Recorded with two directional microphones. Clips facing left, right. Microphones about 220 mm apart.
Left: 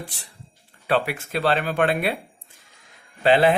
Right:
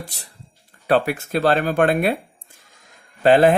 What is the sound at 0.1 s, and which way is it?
Speech, 40° right (ahead or behind).